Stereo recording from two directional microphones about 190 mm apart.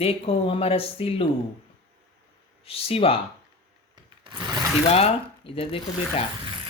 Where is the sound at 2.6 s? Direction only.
30° left (ahead or behind).